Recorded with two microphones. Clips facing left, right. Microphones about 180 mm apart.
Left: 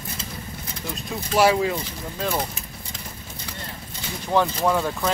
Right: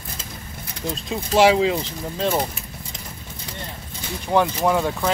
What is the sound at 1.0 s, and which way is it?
Speech, 20° right (ahead or behind).